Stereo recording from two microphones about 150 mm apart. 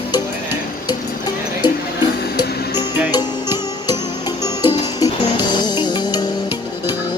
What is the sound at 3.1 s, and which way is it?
Music, 25° left (ahead or behind).